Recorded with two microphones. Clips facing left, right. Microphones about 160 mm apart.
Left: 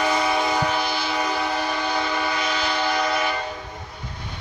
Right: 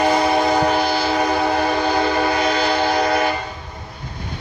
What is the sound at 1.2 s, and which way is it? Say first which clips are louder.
Train: right 7 dB; 60° right (ahead or behind).